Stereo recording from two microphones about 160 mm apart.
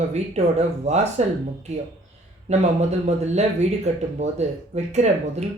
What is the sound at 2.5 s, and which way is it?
Speech, 45° right (ahead or behind).